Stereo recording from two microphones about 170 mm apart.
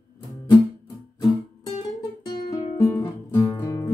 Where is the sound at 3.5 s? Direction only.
20° left (ahead or behind).